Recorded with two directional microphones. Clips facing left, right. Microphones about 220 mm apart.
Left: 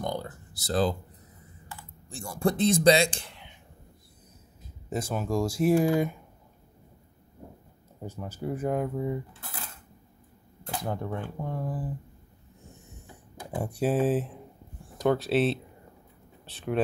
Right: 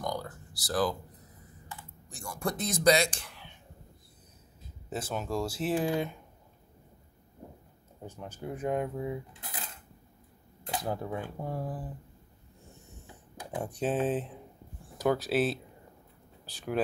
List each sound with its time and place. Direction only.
0.0 s a sound: 25° left (ahead or behind)
2.0 s a man's voice: 30° left (ahead or behind)
4.8 s speech: 10° left (ahead or behind)
8.0 s speech: 10° left (ahead or behind)
9.3 s cutlery: 15° right (ahead or behind)
10.8 s speech: 5° right (ahead or behind)
13.1 s speech: 10° left (ahead or behind)